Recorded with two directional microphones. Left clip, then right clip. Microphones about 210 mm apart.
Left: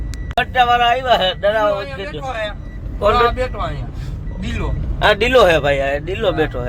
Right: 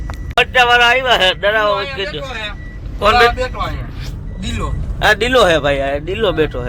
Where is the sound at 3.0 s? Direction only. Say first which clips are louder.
Right 3 dB; centre (ahead or behind).